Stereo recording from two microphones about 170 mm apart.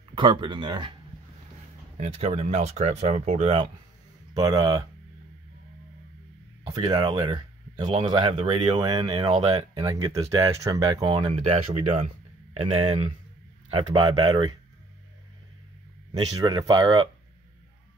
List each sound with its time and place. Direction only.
0.1 s speech: 30° right (ahead or behind)
2.0 s speech: 40° right (ahead or behind)
4.3 s speech: 20° right (ahead or behind)
6.7 s speech: 25° right (ahead or behind)
16.3 s speech: 25° right (ahead or behind)